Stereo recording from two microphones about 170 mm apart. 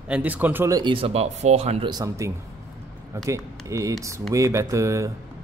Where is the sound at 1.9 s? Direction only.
20° right (ahead or behind).